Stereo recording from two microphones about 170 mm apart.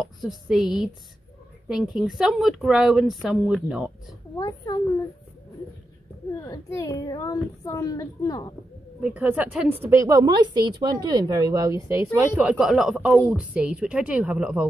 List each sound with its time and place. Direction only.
0.0 s a woman's voice: centre (ahead or behind)
4.4 s a child's voice: 20° left (ahead or behind)
6.4 s a child's voice: 20° left (ahead or behind)
9.0 s a woman's voice: 10° right (ahead or behind)